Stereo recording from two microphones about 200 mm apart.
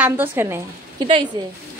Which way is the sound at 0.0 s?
10° right (ahead or behind).